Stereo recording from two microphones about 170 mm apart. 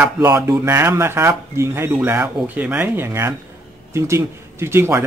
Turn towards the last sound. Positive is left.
turn(degrees=-15)  # may be behind; listen again after turning